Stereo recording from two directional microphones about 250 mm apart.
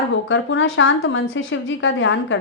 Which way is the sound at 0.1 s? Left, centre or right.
Left.